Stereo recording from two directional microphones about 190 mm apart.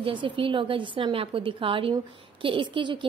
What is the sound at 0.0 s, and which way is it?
A woman's voice, 25° right (ahead or behind).